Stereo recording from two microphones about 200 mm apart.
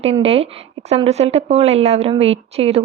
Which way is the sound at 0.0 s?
30° right (ahead or behind).